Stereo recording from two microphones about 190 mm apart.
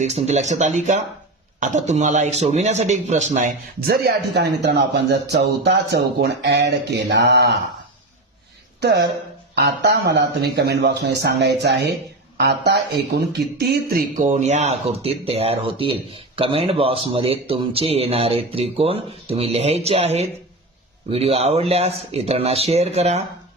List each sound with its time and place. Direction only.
0.0 s a man's voice: 35° right (ahead or behind); by 7.5 s 65° right (ahead or behind)
8.8 s speech: 60° right (ahead or behind); by 23.2 s 35° right (ahead or behind)